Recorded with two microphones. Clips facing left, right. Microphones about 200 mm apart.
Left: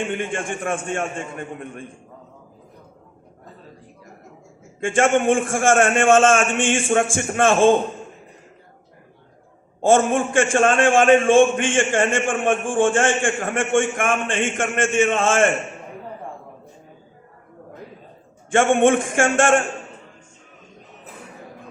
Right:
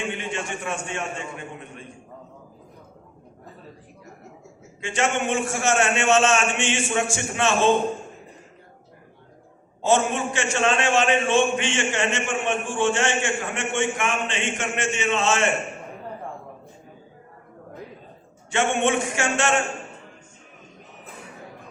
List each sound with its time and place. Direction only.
0.1 s a man's voice: 50° left (ahead or behind)
4.8 s a man's voice: 50° left (ahead or behind)
9.8 s a man's voice: 50° left (ahead or behind)
18.5 s a man's voice: 50° left (ahead or behind)